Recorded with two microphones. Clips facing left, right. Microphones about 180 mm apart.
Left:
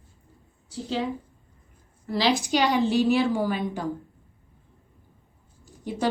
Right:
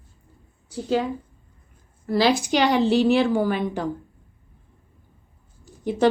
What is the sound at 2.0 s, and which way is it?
Speech, 60° right (ahead or behind).